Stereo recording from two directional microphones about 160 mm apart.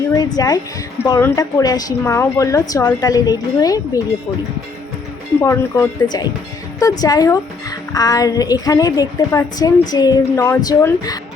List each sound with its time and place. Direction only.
0.1 s a woman's voice: 25° left (ahead or behind)
5.4 s a woman's voice: 20° left (ahead or behind)